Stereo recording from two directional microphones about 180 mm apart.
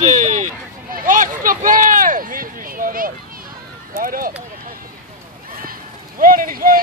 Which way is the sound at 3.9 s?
50° right (ahead or behind).